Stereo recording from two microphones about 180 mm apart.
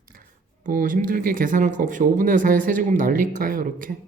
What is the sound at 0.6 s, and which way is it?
Speech, 50° right (ahead or behind).